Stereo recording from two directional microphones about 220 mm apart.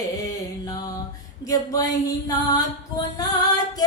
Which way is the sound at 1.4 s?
15° left (ahead or behind).